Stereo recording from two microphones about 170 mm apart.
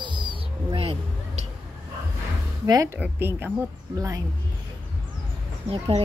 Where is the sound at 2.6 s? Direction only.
20° right (ahead or behind).